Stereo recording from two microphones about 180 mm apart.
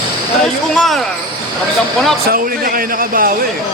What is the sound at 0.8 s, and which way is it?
Speech, centre (ahead or behind).